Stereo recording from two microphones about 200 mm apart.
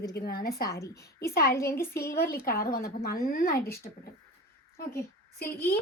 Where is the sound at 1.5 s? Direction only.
15° left (ahead or behind).